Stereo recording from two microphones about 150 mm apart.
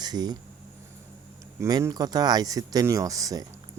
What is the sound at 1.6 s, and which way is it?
Speech, 25° right (ahead or behind).